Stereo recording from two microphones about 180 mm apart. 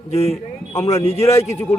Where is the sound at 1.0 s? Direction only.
35° left (ahead or behind).